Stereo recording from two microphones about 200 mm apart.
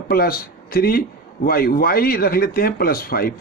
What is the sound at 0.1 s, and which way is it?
Speech, 45° left (ahead or behind).